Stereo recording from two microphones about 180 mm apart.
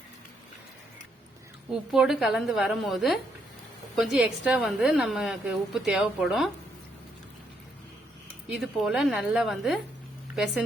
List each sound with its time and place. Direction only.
1.7 s a woman's voice: 5° right (ahead or behind)
8.5 s a woman's voice: centre (ahead or behind)